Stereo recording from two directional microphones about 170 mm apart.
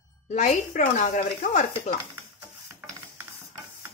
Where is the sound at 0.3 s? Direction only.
45° left (ahead or behind).